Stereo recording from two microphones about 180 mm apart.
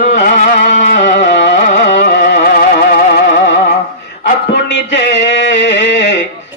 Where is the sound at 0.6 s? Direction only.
45° left (ahead or behind).